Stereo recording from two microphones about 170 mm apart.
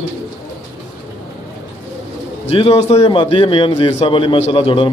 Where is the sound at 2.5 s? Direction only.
35° left (ahead or behind).